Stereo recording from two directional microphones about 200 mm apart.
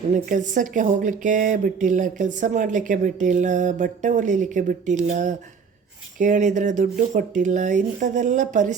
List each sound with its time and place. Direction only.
0.1 s speech: 40° right (ahead or behind)